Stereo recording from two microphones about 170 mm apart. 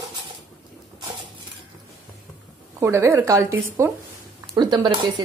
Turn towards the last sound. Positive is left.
turn(degrees=-25)  # may be behind; listen again after turning